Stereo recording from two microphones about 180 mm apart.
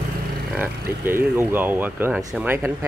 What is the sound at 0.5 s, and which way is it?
Speech, 10° right (ahead or behind).